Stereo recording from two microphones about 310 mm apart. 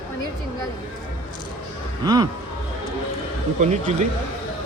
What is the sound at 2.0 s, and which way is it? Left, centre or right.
Speech, centre.